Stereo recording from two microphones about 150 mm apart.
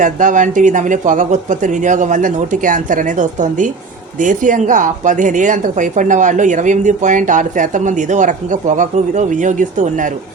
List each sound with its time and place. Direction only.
0.0 s speech: 55° right (ahead or behind)